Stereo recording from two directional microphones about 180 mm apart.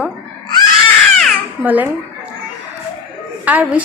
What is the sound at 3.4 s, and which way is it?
Speech, 10° right (ahead or behind).